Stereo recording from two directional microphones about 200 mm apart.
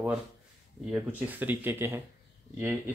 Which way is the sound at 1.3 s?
10° right (ahead or behind).